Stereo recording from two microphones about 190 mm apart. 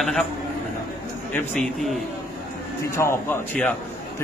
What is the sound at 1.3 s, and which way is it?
Speech, centre (ahead or behind).